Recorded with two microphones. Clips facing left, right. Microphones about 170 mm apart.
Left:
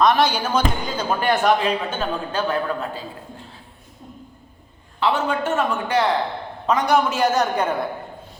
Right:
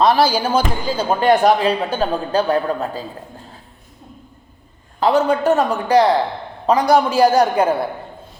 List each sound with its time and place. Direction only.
0.0 s speech: 30° right (ahead or behind)
4.9 s speech: 40° right (ahead or behind)